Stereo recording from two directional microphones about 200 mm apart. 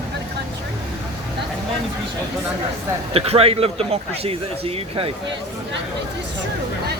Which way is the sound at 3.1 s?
30° right (ahead or behind).